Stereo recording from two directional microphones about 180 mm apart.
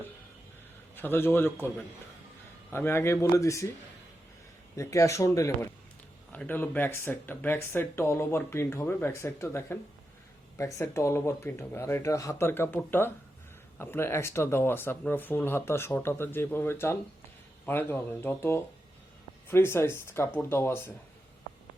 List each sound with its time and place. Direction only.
0.9 s speech: 10° left (ahead or behind)
2.7 s speech: 15° left (ahead or behind)
4.8 s speech: 15° left (ahead or behind)